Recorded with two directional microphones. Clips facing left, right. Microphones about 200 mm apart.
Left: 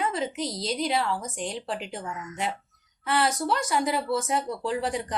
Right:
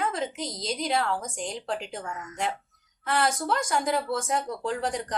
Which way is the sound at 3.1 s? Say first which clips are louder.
Left 1 dB; centre (ahead or behind).